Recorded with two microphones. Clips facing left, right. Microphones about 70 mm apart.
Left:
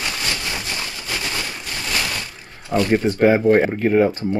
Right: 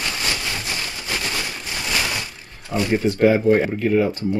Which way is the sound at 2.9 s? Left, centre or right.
Left.